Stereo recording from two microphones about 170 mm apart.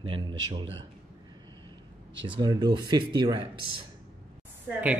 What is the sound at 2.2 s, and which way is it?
Speech, 25° right (ahead or behind).